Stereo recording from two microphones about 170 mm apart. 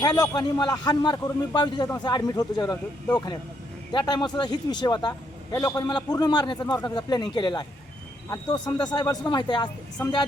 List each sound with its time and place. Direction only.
0.0 s a man's voice: 25° left (ahead or behind)